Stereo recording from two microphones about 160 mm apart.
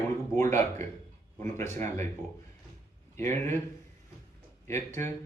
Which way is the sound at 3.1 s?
15° left (ahead or behind).